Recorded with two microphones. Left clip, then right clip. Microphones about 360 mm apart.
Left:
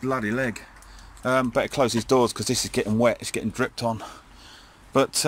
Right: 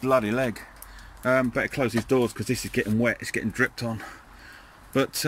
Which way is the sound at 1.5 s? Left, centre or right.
Left.